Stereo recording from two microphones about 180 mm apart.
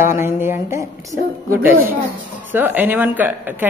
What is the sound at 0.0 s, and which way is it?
A woman's voice, 15° right (ahead or behind).